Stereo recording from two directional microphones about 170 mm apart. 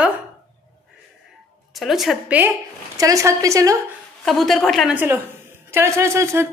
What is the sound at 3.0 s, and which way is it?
Speech, 20° right (ahead or behind).